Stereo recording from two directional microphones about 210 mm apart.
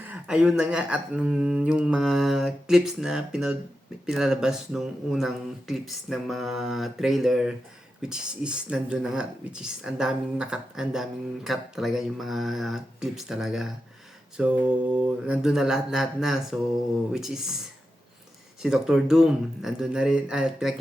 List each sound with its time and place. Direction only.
0.0 s speech: 5° right (ahead or behind)
15.3 s speech: 5° right (ahead or behind)
18.6 s speech: centre (ahead or behind)